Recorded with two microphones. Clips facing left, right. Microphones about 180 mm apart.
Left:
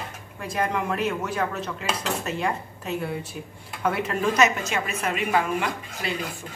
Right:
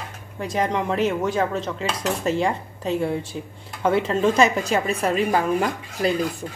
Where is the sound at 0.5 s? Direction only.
25° right (ahead or behind).